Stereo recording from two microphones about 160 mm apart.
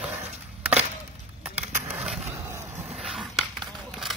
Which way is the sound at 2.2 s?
15° right (ahead or behind).